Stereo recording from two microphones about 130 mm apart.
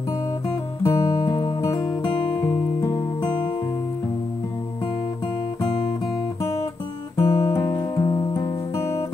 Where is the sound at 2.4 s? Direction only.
25° left (ahead or behind).